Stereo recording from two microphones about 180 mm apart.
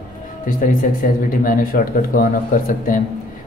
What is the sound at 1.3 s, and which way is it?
Speech, 50° left (ahead or behind).